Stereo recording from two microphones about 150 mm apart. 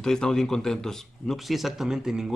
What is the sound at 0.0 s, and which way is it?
Speech, 5° left (ahead or behind).